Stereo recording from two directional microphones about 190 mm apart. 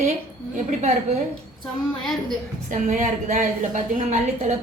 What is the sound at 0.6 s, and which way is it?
Speech, 35° right (ahead or behind).